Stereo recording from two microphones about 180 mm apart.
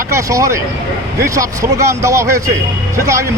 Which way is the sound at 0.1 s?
15° right (ahead or behind).